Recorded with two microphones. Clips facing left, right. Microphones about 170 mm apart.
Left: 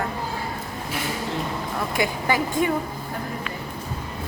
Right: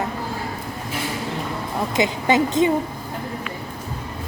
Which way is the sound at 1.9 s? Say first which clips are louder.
Right 5 dB; 20° right (ahead or behind).